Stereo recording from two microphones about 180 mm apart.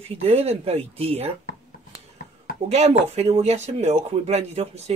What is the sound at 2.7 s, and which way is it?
Speech, 35° right (ahead or behind).